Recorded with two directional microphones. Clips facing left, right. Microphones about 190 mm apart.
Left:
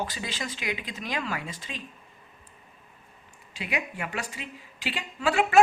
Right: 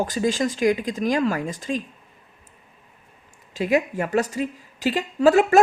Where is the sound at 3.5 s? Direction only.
40° right (ahead or behind).